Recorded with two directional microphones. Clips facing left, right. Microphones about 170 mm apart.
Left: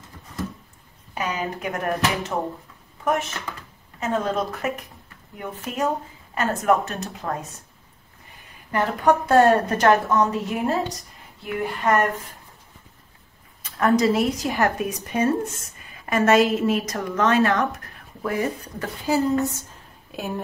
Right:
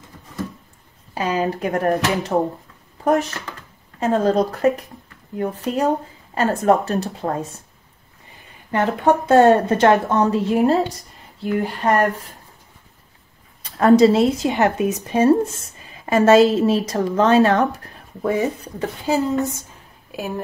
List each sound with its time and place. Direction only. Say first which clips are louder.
1.1 s speech: right 6 dB; 30° right (ahead or behind)
8.7 s speech: right 3 dB; 25° right (ahead or behind)
13.6 s speech: right 7 dB; 30° right (ahead or behind)
20.1 s speech: right 3 dB; 5° right (ahead or behind)